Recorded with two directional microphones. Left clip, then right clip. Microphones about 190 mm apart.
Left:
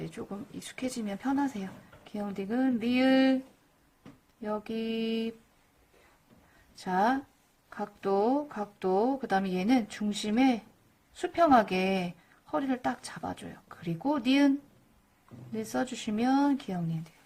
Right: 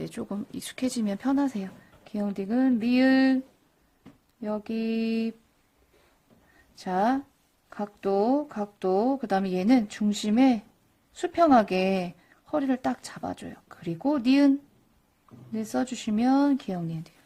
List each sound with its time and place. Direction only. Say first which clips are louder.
0.0 s speech: right 5 dB; 45° right (ahead or behind)
4.4 s speech: right 3 dB; 35° right (ahead or behind)
6.7 s speech: right 2 dB; 35° right (ahead or behind)
15.5 s speech: right 3 dB; 35° right (ahead or behind)